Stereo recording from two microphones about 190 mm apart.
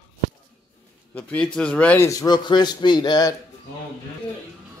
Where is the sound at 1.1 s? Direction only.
5° left (ahead or behind).